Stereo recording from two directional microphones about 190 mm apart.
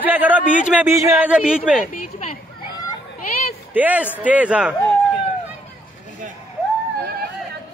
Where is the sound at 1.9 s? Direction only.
40° left (ahead or behind).